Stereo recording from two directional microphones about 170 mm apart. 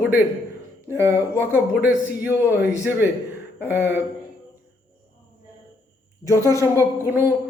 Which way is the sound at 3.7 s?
10° right (ahead or behind).